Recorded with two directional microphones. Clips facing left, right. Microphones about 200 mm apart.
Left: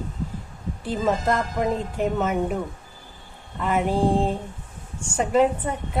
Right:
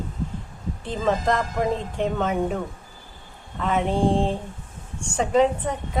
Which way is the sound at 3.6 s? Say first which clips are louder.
Even; 5° left (ahead or behind).